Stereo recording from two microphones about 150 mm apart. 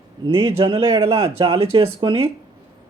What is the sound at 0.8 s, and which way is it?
Speech, 20° right (ahead or behind).